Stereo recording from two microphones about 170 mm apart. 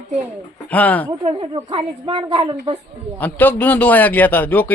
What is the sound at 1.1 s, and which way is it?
A woman's voice, 30° right (ahead or behind).